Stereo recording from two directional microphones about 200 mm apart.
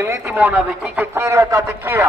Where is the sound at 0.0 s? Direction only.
10° right (ahead or behind).